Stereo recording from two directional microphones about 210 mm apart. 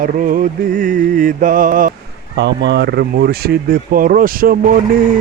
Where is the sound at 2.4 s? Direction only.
55° right (ahead or behind).